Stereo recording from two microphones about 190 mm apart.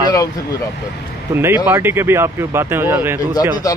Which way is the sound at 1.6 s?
10° right (ahead or behind).